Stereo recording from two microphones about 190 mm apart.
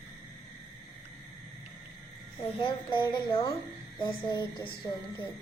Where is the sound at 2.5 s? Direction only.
25° left (ahead or behind).